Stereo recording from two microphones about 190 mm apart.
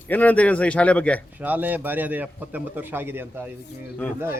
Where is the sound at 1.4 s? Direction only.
10° right (ahead or behind).